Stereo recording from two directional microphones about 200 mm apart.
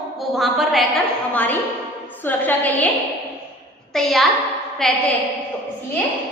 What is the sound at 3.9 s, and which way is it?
A child's voice, centre (ahead or behind).